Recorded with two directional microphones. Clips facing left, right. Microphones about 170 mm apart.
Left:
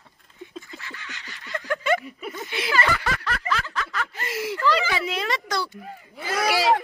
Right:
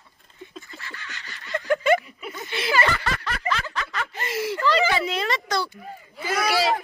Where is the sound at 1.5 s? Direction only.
20° right (ahead or behind).